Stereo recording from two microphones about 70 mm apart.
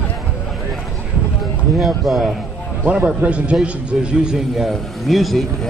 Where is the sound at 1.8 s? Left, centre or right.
Centre.